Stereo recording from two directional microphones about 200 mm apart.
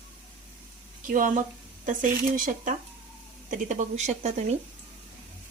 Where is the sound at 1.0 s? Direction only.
45° right (ahead or behind).